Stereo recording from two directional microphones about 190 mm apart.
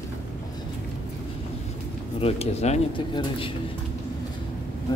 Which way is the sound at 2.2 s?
35° left (ahead or behind).